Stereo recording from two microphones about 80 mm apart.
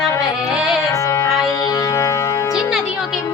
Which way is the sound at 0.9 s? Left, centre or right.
Left.